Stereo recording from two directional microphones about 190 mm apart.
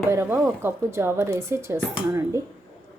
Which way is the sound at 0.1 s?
15° right (ahead or behind).